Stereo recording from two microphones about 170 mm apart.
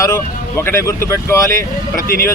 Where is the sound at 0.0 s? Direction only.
15° left (ahead or behind).